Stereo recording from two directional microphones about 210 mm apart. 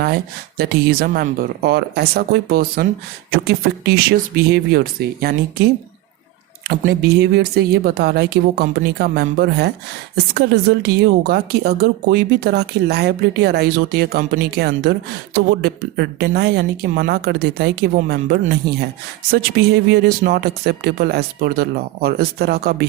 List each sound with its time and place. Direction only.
0.0 s speech: 50° right (ahead or behind)
6.7 s speech: 50° right (ahead or behind)